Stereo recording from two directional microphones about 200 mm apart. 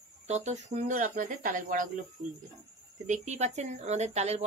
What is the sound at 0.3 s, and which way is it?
Speech, 35° right (ahead or behind).